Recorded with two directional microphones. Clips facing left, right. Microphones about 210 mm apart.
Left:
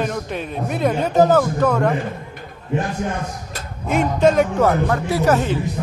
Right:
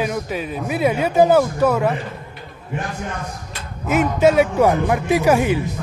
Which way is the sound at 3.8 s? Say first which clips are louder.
Right 1 dB; 5° right (ahead or behind).